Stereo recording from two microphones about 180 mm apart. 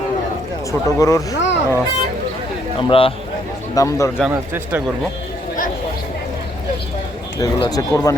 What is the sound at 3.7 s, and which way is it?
Speech, 15° left (ahead or behind).